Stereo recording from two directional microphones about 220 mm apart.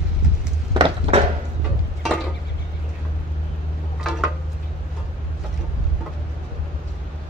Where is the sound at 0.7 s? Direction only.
25° right (ahead or behind).